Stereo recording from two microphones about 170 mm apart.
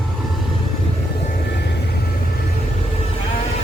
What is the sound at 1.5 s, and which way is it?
Vehicle, 80° left.